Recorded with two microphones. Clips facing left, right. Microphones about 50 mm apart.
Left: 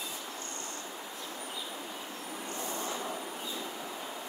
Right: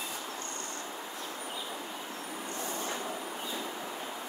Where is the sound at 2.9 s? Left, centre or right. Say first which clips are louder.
Even; centre.